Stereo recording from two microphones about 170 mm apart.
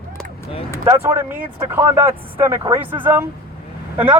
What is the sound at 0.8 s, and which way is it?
Speech, 20° right (ahead or behind).